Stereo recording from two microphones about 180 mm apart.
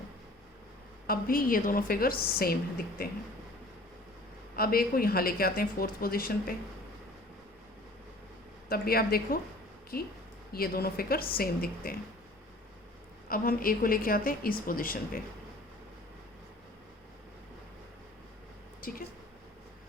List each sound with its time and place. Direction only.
1.0 s a woman's voice: 55° left (ahead or behind)
4.5 s a woman's voice: 55° left (ahead or behind)
8.7 s a woman's voice: 55° left (ahead or behind)
10.5 s a woman's voice: 60° left (ahead or behind)
13.2 s a woman's voice: 55° left (ahead or behind)